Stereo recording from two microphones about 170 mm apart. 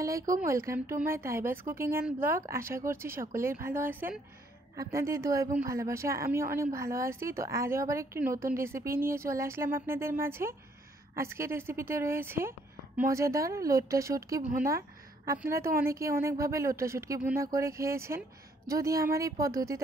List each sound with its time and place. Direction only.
0.0 s a woman's voice: 20° right (ahead or behind)